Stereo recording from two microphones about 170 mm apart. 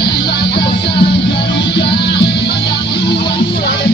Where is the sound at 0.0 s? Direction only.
75° left (ahead or behind).